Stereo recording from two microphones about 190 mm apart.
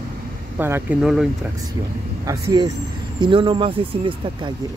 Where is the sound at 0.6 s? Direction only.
10° right (ahead or behind).